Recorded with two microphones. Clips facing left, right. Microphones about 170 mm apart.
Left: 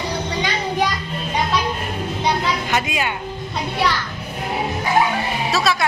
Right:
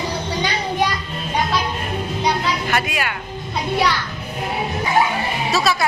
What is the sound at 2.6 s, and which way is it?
Speech, 20° left (ahead or behind).